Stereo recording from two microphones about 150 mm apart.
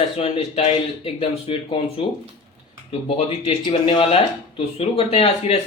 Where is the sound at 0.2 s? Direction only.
40° left (ahead or behind).